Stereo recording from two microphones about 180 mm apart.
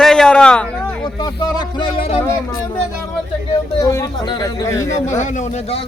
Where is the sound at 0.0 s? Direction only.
5° left (ahead or behind).